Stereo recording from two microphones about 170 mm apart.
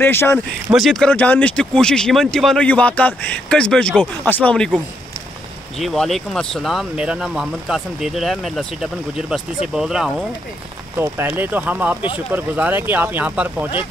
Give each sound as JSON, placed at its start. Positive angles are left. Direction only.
{"t": 0.0, "sound": "speech", "side_deg": 15}
{"t": 0.7, "sound": "speech", "side_deg": 0}
{"t": 5.8, "sound": "speech", "side_deg": 0}